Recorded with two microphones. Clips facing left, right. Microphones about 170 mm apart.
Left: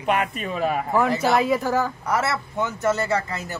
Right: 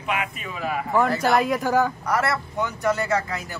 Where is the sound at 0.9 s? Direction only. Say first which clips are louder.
Right 1 dB; 5° left (ahead or behind).